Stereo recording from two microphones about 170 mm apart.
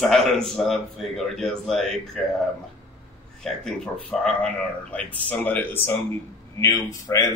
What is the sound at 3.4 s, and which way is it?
Speech, 5° left (ahead or behind).